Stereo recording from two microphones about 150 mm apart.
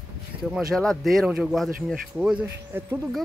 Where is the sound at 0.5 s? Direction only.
Centre (ahead or behind); by 3.0 s 15° right (ahead or behind).